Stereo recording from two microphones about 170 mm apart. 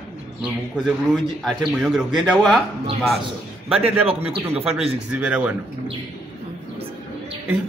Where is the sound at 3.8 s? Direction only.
35° right (ahead or behind).